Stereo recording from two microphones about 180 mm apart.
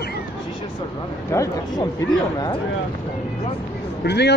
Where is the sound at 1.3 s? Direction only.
15° left (ahead or behind).